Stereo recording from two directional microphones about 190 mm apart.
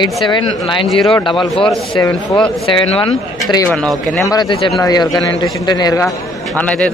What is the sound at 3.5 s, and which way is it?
Speech, 15° left (ahead or behind).